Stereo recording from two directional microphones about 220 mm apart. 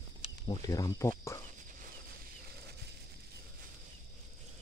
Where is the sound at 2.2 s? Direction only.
45° right (ahead or behind).